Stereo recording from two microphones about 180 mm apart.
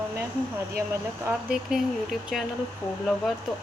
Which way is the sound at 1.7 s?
5° right (ahead or behind).